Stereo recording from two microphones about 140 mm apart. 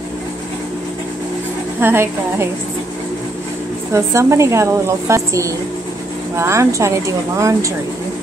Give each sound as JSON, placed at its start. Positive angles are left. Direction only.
{"t": 1.8, "sound": "a woman's voice", "side_deg": -15}
{"t": 3.9, "sound": "a woman's voice", "side_deg": -20}